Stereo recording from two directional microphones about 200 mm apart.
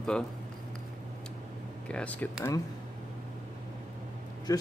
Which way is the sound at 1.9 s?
5° left (ahead or behind).